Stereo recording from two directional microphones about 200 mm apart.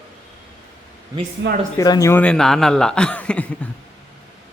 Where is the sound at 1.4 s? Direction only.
60° right (ahead or behind).